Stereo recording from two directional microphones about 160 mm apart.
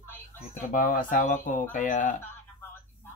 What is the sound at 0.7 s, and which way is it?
Speech, 55° left (ahead or behind).